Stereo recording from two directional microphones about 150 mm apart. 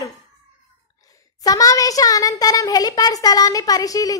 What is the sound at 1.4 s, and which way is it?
A woman's voice, 25° left (ahead or behind).